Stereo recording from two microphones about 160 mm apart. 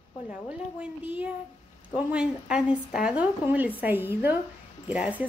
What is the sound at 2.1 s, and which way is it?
A woman's voice, 5° right (ahead or behind).